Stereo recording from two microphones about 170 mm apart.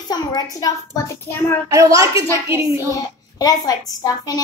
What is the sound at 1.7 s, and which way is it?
A woman's voice, 20° right (ahead or behind).